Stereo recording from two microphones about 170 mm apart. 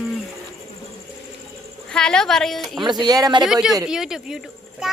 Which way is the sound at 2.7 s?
25° right (ahead or behind).